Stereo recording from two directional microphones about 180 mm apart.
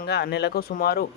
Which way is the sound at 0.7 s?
55° left (ahead or behind).